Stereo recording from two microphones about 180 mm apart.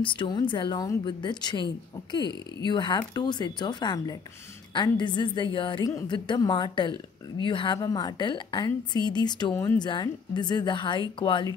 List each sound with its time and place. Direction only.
0.0 s a woman's voice: 25° left (ahead or behind)
9.5 s speech: 15° left (ahead or behind)
9.8 s a woman's voice: 25° left (ahead or behind)